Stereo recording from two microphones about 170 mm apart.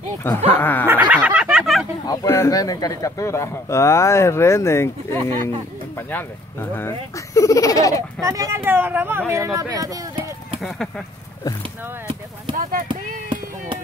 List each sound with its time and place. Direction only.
0.2 s speech: 10° left (ahead or behind)
0.8 s a sound: 10° right (ahead or behind)
2.0 s speech: 15° left (ahead or behind)
8.2 s speech: 20° right (ahead or behind)